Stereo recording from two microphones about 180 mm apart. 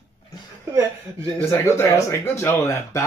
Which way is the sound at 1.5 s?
15° left (ahead or behind).